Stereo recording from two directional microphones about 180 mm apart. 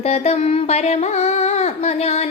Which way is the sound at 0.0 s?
35° left (ahead or behind).